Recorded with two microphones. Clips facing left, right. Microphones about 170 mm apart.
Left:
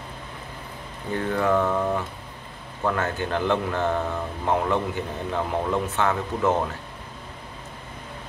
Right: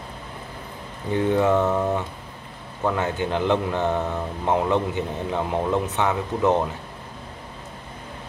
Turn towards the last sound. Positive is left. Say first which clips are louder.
# right 2 dB
turn(degrees=-20)  # may be behind; listen again after turning